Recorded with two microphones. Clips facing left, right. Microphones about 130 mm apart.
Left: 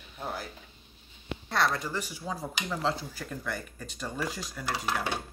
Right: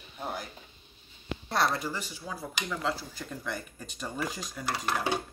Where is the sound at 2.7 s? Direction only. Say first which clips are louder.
Left 2 dB; 30° left (ahead or behind).